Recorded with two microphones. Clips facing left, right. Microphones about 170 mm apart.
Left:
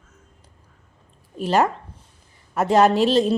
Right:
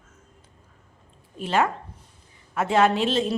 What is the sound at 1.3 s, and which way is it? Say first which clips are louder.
A woman's voice: left 4 dB; 40° left (ahead or behind).